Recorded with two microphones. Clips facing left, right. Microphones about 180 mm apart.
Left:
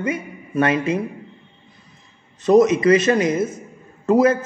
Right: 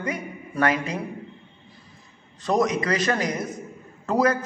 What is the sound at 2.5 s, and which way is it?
A woman's voice, 20° left (ahead or behind).